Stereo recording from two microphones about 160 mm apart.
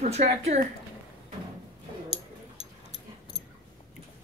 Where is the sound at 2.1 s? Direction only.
35° left (ahead or behind).